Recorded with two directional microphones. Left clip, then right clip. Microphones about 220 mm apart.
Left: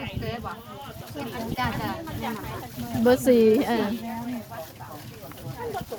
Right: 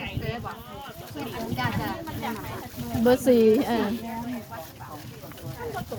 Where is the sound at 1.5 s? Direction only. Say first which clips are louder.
Left 1 dB; 20° left (ahead or behind).